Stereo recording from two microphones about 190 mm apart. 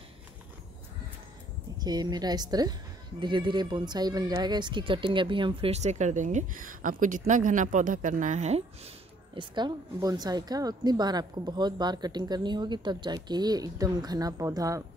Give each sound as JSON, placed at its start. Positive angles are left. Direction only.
{"t": 1.8, "sound": "a woman's voice", "side_deg": -20}